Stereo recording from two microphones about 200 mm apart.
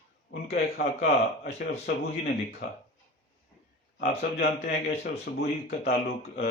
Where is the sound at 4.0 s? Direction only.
50° left (ahead or behind).